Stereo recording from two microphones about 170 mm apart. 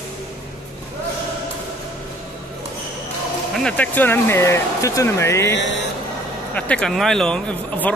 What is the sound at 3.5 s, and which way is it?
A man's voice, 5° left (ahead or behind).